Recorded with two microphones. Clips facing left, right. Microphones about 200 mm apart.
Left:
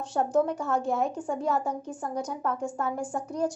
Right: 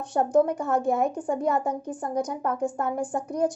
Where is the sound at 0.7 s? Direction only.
55° right (ahead or behind).